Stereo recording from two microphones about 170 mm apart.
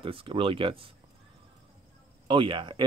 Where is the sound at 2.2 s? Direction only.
30° right (ahead or behind).